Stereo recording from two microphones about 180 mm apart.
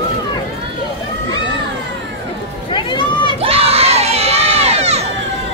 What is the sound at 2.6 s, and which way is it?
Run, 25° left (ahead or behind).